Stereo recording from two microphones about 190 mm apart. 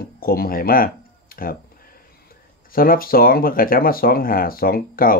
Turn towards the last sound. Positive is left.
turn(degrees=50)  # may be behind; listen again after turning